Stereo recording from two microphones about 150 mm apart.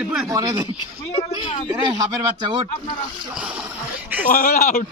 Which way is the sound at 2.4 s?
35° right (ahead or behind).